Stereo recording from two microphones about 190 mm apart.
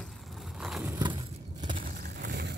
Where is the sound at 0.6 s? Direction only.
Centre (ahead or behind).